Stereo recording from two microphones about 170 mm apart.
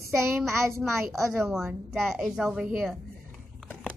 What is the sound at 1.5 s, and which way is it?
A child's voice, centre (ahead or behind).